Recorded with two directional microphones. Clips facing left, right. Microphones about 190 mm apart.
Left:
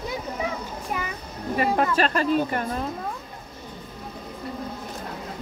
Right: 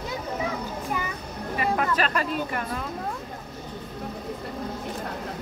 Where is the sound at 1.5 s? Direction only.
35° left (ahead or behind).